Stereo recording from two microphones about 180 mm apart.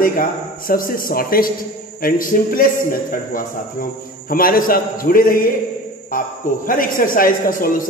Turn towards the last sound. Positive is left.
turn(degrees=50)  # may be behind; listen again after turning